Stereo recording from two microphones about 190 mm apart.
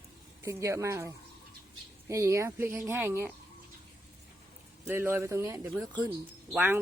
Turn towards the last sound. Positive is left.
turn(degrees=-10)  # may be behind; listen again after turning